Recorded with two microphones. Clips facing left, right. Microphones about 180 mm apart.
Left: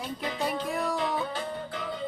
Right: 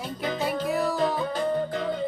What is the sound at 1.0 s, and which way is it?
Music, 40° right (ahead or behind).